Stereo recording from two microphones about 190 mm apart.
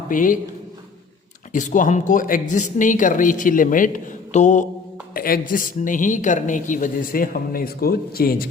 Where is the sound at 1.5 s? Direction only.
40° left (ahead or behind).